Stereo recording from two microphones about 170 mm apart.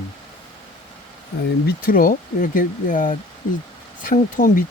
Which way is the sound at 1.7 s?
55° left (ahead or behind).